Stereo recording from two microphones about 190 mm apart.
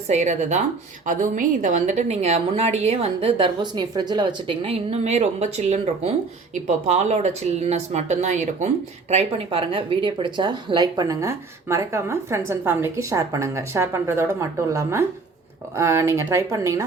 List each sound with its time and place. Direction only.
0.1 s a woman's voice: 40° right (ahead or behind); by 16.8 s 15° right (ahead or behind)